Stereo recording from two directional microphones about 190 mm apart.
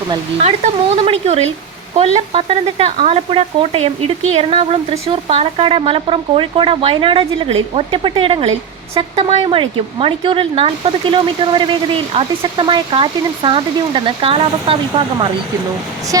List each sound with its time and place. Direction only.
1.0 s speech: 35° right (ahead or behind)